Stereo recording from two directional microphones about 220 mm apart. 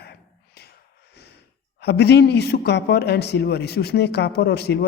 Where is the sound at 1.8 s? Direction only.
50° left (ahead or behind).